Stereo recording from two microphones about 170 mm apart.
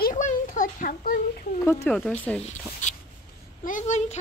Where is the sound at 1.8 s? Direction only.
5° left (ahead or behind).